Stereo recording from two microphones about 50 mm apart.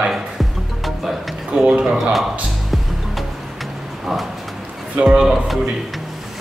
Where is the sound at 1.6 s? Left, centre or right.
Centre.